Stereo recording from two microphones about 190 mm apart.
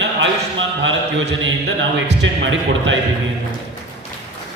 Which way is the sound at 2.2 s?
80° right.